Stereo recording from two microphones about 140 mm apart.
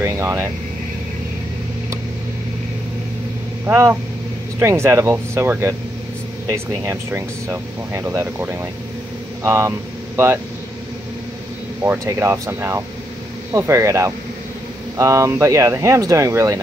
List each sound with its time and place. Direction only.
0.0 s speech: 15° right (ahead or behind)
3.6 s speech: 20° right (ahead or behind)
11.8 s speech: 20° right (ahead or behind)